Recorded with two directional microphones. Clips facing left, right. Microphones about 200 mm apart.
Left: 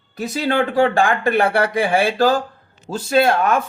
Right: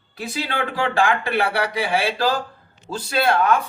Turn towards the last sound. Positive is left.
turn(degrees=45)  # may be behind; listen again after turning